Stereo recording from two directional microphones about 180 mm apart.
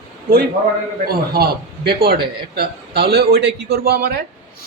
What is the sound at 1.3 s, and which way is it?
A man's voice, 60° right (ahead or behind).